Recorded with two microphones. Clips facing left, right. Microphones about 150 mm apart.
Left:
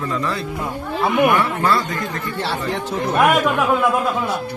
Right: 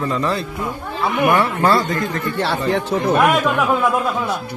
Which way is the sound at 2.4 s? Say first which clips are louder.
Right 4 dB; 65° right (ahead or behind).